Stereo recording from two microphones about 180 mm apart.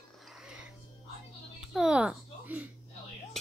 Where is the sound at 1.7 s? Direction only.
5° right (ahead or behind).